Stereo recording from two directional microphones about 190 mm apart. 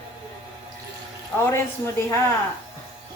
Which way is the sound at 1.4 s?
15° left (ahead or behind).